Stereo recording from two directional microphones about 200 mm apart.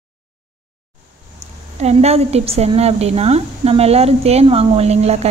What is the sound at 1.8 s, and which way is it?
A woman's voice, 30° right (ahead or behind).